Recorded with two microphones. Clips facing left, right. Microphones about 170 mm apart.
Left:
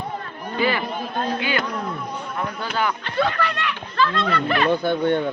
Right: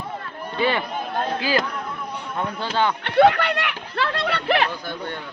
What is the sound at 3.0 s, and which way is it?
Speech, 70° right (ahead or behind).